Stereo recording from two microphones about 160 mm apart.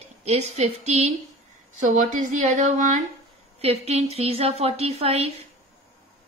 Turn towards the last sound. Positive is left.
turn(degrees=-40)  # may be behind; listen again after turning